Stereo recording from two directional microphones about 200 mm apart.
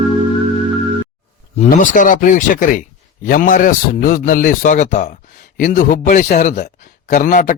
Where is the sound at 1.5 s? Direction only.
40° left (ahead or behind).